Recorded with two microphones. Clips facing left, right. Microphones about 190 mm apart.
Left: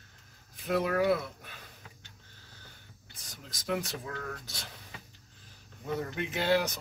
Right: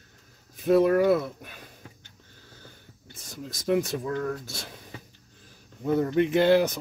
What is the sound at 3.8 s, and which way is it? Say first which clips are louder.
Speech: right 10 dB; 50° right (ahead or behind).